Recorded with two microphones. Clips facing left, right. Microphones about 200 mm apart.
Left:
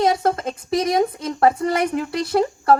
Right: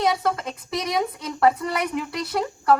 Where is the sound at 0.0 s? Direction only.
45° left (ahead or behind).